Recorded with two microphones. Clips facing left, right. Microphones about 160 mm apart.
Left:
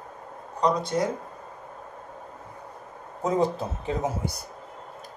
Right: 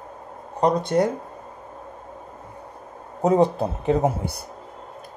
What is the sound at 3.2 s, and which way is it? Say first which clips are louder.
Speech: right 6 dB; 65° right (ahead or behind).